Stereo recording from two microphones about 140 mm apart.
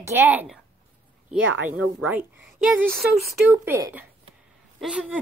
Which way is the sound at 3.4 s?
15° right (ahead or behind).